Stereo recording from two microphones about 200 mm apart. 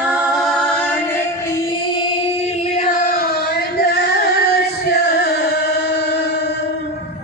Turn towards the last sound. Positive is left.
turn(degrees=55)  # may be behind; listen again after turning